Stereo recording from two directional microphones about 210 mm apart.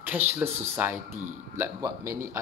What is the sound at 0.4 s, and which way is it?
Speech, 10° right (ahead or behind).